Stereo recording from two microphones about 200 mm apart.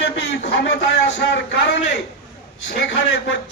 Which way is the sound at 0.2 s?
60° left (ahead or behind).